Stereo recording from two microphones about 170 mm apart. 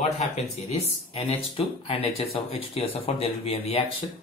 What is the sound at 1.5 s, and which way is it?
Speech, 35° left (ahead or behind).